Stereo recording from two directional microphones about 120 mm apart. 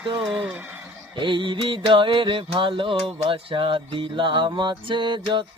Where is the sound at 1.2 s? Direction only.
40° right (ahead or behind).